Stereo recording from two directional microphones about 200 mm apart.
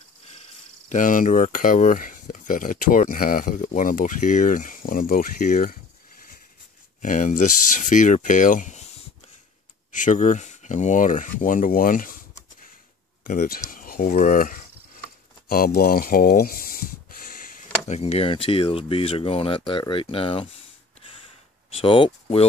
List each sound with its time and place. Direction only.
0.8 s speech: 40° left (ahead or behind)
7.0 s speech: 40° left (ahead or behind)
9.9 s speech: 40° left (ahead or behind)
13.2 s speech: 45° left (ahead or behind)
17.8 s speech: 30° left (ahead or behind)
21.7 s speech: 25° left (ahead or behind)